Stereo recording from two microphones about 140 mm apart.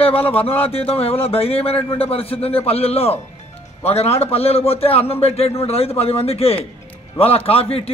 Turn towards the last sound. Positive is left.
turn(degrees=45)  # may be behind; listen again after turning